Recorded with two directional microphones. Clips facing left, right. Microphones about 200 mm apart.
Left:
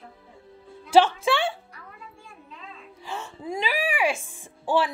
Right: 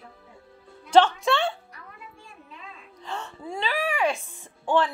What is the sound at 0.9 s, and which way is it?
Speech, 5° left (ahead or behind).